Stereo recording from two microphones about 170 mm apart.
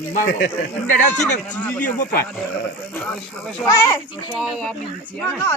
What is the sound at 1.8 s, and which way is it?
Speech, 60° left (ahead or behind).